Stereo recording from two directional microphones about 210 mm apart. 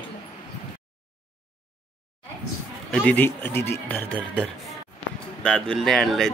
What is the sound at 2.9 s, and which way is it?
Speech, 5° left (ahead or behind).